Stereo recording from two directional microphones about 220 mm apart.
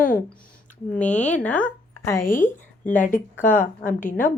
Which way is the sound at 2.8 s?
35° left (ahead or behind).